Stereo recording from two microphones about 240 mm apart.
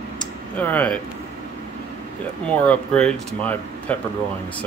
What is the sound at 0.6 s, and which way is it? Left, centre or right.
Speech, centre.